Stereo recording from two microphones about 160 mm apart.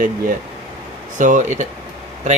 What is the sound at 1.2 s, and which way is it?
Speech, 50° right (ahead or behind).